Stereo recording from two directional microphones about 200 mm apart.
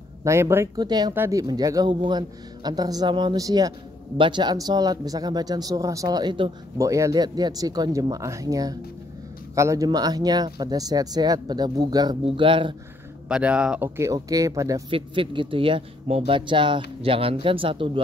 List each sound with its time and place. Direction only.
0.2 s speech: 15° right (ahead or behind)
13.3 s speech: 5° right (ahead or behind); by 18.0 s 25° right (ahead or behind)